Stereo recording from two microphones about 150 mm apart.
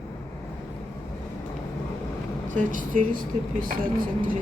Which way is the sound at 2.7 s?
60° right (ahead or behind).